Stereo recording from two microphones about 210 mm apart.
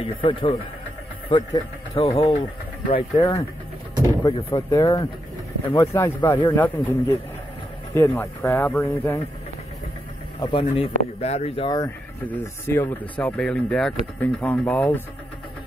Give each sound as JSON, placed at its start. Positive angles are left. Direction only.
{"t": 0.0, "sound": "speech", "side_deg": 25}
{"t": 10.4, "sound": "speech", "side_deg": 25}
{"t": 12.3, "sound": "speech", "side_deg": 10}